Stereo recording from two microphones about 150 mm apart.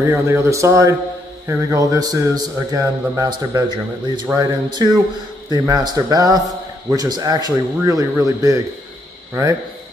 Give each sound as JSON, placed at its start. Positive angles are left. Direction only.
{"t": 0.0, "sound": "speech", "side_deg": -15}